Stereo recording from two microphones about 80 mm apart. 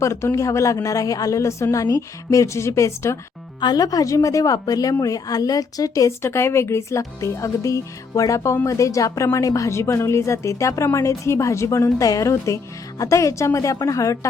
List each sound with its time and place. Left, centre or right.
0.0 s speech: left
3.6 s a woman's voice: left